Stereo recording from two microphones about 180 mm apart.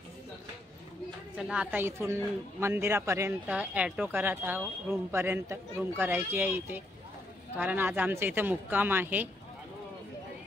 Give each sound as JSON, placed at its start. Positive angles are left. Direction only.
{"t": 1.4, "sound": "speech", "side_deg": -5}